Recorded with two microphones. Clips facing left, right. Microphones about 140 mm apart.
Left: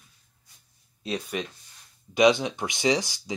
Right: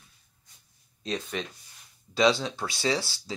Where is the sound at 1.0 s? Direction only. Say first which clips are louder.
Left 2 dB; 10° left (ahead or behind).